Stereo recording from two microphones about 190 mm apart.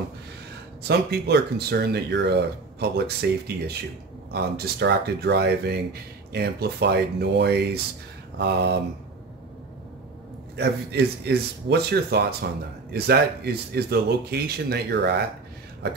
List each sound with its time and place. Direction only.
0.8 s speech: 60° right (ahead or behind)
10.5 s speech: 60° right (ahead or behind)